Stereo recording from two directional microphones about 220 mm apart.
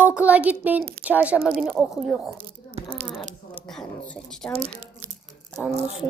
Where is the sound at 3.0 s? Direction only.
40° right (ahead or behind).